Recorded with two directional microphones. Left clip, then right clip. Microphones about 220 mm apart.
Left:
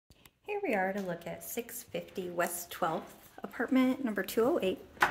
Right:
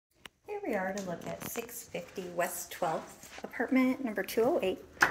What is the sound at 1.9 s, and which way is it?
Speech, 25° left (ahead or behind).